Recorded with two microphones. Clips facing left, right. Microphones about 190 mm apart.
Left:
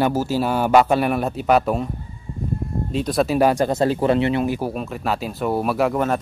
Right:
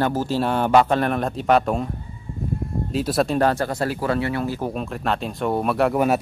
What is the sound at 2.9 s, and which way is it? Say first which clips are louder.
Speech: left 1 dB; centre (ahead or behind).